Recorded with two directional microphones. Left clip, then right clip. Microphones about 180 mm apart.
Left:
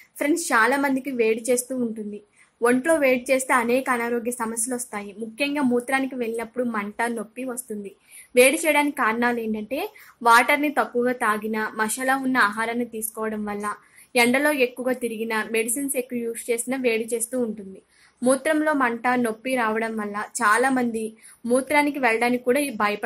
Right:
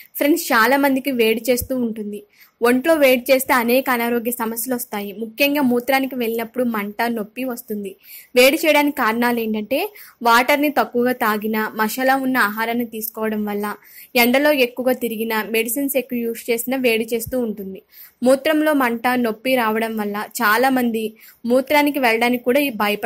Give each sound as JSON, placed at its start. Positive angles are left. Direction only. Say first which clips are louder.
{"t": 0.2, "sound": "a woman's voice", "louder": "right 4 dB", "side_deg": -35}